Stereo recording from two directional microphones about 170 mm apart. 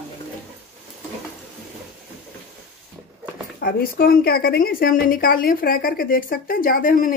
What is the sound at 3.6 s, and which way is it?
A woman's voice, 60° left (ahead or behind).